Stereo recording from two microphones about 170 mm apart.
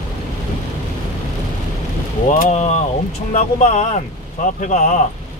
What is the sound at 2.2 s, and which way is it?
Speech, 50° left (ahead or behind).